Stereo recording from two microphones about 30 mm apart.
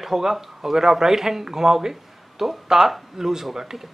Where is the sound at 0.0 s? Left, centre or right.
Centre.